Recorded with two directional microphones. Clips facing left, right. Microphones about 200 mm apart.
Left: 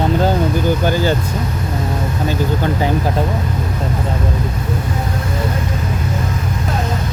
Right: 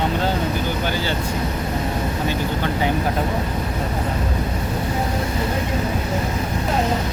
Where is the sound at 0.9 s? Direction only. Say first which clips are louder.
Left 8 dB; 45° left (ahead or behind).